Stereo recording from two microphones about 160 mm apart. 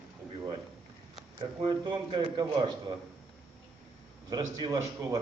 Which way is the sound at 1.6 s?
25° right (ahead or behind).